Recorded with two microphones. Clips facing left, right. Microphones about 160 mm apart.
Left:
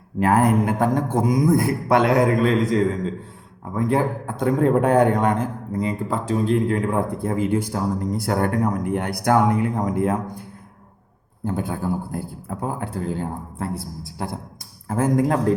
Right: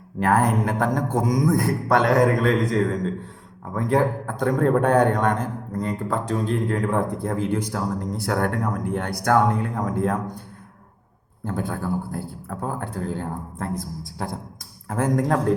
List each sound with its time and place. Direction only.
0.2 s a man's voice: 5° left (ahead or behind)
11.4 s a man's voice: 10° left (ahead or behind)